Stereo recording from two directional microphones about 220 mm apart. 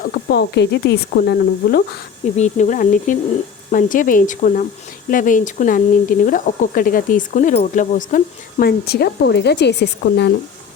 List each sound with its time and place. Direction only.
0.0 s speech: 45° left (ahead or behind)
2.3 s speech: 30° left (ahead or behind); by 10.3 s 50° left (ahead or behind)